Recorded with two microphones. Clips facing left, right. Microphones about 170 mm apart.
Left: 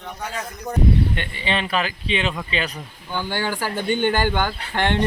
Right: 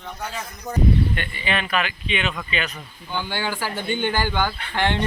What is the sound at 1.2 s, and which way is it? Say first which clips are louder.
Speech: left 1 dB; 30° left (ahead or behind).